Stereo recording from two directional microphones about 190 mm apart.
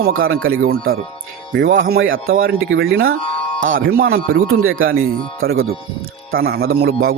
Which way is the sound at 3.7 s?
55° right (ahead or behind).